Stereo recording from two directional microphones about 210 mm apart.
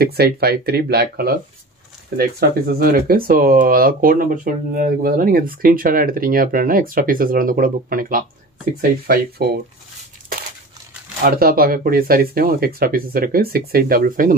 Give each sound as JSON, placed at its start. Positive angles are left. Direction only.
{"t": 0.0, "sound": "speech", "side_deg": -50}
{"t": 11.2, "sound": "speech", "side_deg": -45}